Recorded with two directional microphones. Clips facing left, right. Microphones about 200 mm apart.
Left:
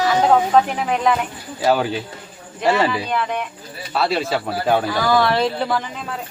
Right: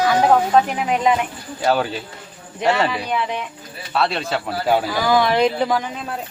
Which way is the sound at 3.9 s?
Centre (ahead or behind).